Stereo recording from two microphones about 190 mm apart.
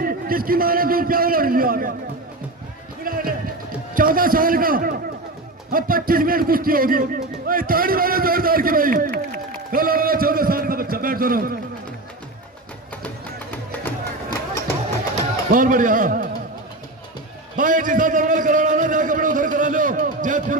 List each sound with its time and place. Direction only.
0.0 s a man's voice: 50° right (ahead or behind)
3.0 s a man's voice: 50° right (ahead or behind)
13.0 s music: 10° left (ahead or behind)
15.5 s a man's voice: 45° right (ahead or behind)
17.6 s a man's voice: 45° right (ahead or behind)